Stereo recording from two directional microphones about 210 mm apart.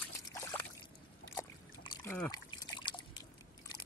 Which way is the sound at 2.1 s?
10° left (ahead or behind).